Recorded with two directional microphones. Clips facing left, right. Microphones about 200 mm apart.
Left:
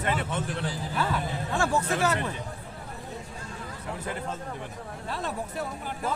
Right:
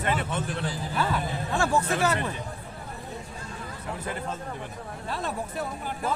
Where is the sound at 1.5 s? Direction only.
30° right (ahead or behind).